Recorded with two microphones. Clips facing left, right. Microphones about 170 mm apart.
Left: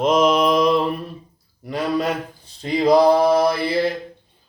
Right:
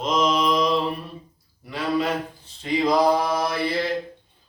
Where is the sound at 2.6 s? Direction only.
35° left (ahead or behind).